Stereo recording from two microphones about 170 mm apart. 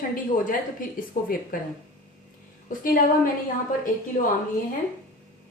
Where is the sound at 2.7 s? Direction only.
55° left (ahead or behind).